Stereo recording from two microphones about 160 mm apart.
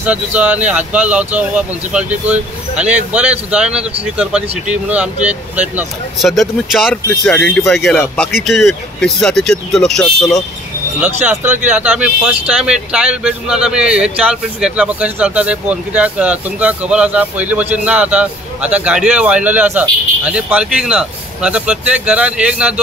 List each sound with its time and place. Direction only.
0.0 s a man's voice: 10° right (ahead or behind)
6.2 s speech: centre (ahead or behind)
11.2 s a man's voice: 10° right (ahead or behind)